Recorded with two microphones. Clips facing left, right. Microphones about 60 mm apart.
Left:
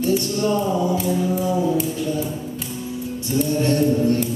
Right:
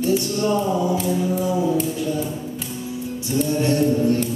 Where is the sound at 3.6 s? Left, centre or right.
Centre.